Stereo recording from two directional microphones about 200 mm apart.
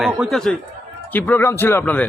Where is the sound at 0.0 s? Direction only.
Centre (ahead or behind).